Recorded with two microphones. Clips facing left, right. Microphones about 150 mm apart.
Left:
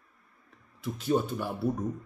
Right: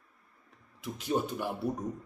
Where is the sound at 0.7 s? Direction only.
15° right (ahead or behind).